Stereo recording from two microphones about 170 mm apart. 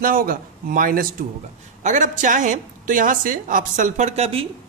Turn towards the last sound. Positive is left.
turn(degrees=-35)  # may be behind; listen again after turning